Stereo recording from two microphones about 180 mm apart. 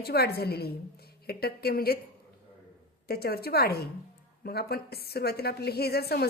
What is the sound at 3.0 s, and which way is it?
A woman's voice, 60° left (ahead or behind).